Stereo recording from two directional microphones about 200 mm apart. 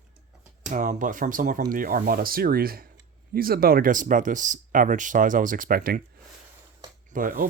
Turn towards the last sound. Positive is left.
turn(degrees=-45)  # may be behind; listen again after turning